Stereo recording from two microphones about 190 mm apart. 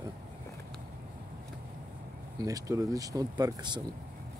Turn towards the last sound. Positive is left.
turn(degrees=-20)  # may be behind; listen again after turning